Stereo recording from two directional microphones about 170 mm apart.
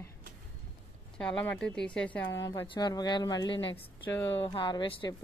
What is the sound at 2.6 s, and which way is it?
Speech, 25° left (ahead or behind).